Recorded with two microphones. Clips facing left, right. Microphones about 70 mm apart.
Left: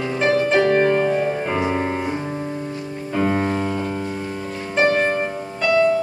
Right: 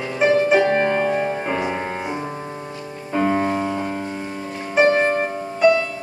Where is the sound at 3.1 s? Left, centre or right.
Centre.